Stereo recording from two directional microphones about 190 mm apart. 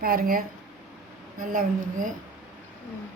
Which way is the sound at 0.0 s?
50° right (ahead or behind).